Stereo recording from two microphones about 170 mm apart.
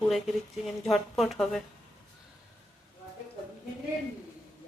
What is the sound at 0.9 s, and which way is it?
Speech, centre (ahead or behind).